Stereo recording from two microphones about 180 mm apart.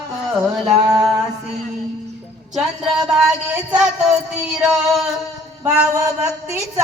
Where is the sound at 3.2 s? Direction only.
10° right (ahead or behind).